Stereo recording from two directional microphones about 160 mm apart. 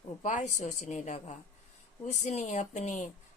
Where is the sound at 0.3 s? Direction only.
50° left (ahead or behind).